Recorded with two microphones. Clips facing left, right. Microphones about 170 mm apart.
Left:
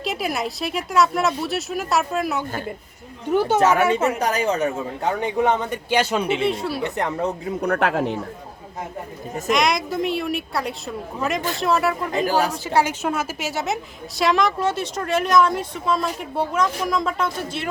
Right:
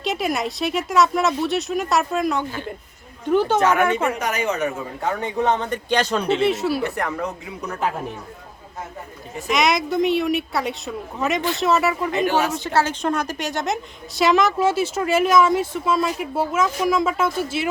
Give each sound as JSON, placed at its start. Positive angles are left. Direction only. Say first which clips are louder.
{"t": 0.0, "sound": "speech", "louder": "right 2 dB", "side_deg": 0}
{"t": 3.6, "sound": "speech", "louder": "left 1 dB", "side_deg": 35}
{"t": 5.0, "sound": "speech", "louder": "left 1 dB", "side_deg": 15}
{"t": 6.4, "sound": "speech", "louder": "right 3 dB", "side_deg": 0}
{"t": 6.8, "sound": "a woman's voice", "louder": "left 1 dB", "side_deg": 20}
{"t": 7.6, "sound": "speech", "louder": "left 5 dB", "side_deg": 70}
{"t": 9.5, "sound": "speech", "louder": "right 1 dB", "side_deg": 0}
{"t": 12.1, "sound": "speech", "louder": "even", "side_deg": 35}
{"t": 12.4, "sound": "speech", "louder": "even", "side_deg": 5}